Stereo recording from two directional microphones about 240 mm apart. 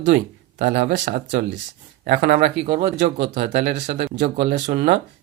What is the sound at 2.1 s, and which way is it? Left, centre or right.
Speech, right.